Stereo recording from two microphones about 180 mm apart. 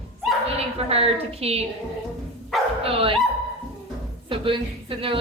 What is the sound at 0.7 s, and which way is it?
Speech, 35° right (ahead or behind).